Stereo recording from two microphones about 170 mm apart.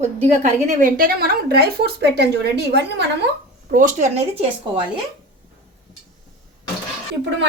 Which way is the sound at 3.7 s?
45° right (ahead or behind).